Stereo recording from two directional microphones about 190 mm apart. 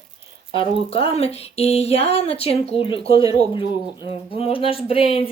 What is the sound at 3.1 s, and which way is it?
Speech, 20° right (ahead or behind).